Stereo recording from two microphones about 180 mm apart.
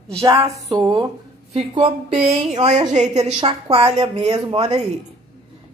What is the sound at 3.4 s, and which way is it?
A woman's voice, 30° right (ahead or behind).